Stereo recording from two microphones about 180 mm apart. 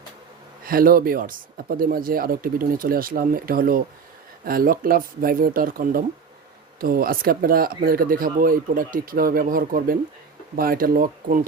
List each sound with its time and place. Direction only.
0.6 s speech: 55° right (ahead or behind)